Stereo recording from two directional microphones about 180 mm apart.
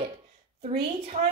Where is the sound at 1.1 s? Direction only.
35° right (ahead or behind).